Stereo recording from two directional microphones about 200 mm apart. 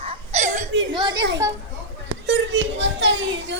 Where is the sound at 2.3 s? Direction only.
65° right (ahead or behind).